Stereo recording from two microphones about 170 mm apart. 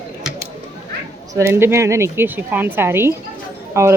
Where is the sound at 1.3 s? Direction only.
15° right (ahead or behind).